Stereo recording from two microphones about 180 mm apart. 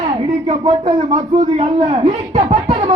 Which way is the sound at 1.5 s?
30° right (ahead or behind).